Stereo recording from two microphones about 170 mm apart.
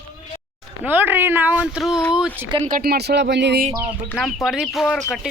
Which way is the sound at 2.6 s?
60° right (ahead or behind).